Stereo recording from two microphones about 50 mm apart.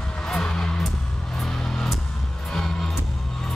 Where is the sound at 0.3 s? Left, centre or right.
Centre.